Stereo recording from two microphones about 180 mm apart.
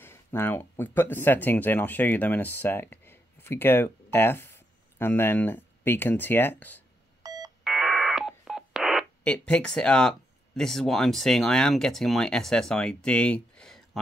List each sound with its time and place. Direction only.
0.0 s speech: 10° left (ahead or behind)
7.2 s telephone dialing: 20° right (ahead or behind)
7.6 s speech: centre (ahead or behind)